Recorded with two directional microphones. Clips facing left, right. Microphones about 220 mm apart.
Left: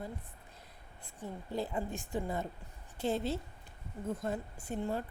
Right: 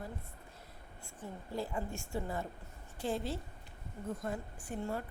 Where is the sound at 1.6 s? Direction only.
20° left (ahead or behind).